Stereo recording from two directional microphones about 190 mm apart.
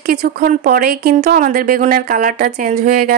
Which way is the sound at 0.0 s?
55° right (ahead or behind).